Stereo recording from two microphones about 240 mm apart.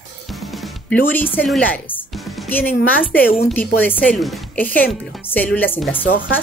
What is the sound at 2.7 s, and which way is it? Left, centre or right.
Speech, left.